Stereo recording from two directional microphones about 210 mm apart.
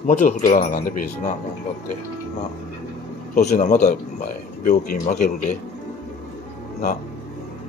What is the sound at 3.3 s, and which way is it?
Speech, 35° left (ahead or behind).